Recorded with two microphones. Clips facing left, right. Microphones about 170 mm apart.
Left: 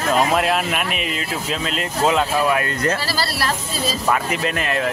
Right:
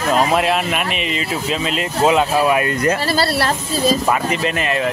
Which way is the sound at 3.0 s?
55° right (ahead or behind).